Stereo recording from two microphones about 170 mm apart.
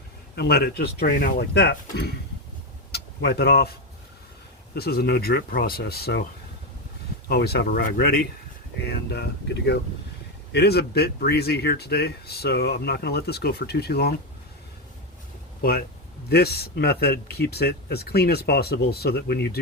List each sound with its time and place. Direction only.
0.3 s speech: 70° left (ahead or behind)
1.1 s speech: 50° left (ahead or behind)
2.9 s speech: 70° left (ahead or behind)
7.3 s speech: 70° left (ahead or behind)
7.7 s speech: 50° left (ahead or behind); by 14.1 s 70° left (ahead or behind)
16.3 s speech: 65° left (ahead or behind)